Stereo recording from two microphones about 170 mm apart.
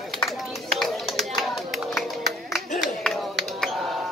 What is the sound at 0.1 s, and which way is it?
Run, centre (ahead or behind).